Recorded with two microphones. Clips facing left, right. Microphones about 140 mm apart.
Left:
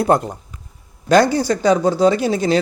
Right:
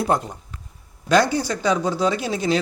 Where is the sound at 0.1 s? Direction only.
50° left (ahead or behind).